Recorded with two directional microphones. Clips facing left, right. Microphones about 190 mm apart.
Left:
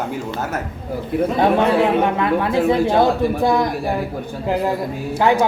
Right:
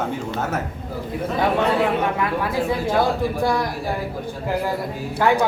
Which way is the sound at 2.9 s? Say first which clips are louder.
Left 4 dB; 20° left (ahead or behind).